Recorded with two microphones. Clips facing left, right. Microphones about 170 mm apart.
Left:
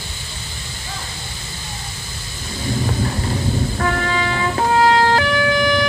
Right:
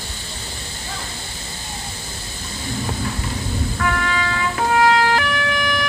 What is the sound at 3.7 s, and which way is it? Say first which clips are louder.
Music: left 2 dB; 35° left (ahead or behind).